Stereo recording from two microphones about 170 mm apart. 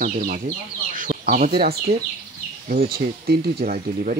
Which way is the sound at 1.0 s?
55° right (ahead or behind).